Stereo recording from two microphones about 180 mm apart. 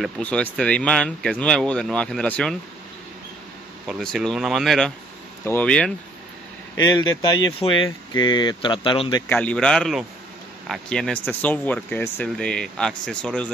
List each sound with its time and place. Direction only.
0.0 s speech: 5° left (ahead or behind)
3.8 s speech: centre (ahead or behind)
6.8 s speech: 20° left (ahead or behind)
9.3 s speech: 5° left (ahead or behind)